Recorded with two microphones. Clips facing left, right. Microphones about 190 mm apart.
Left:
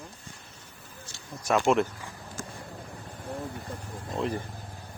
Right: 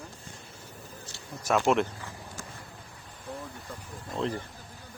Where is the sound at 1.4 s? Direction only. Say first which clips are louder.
Left 1 dB; centre (ahead or behind).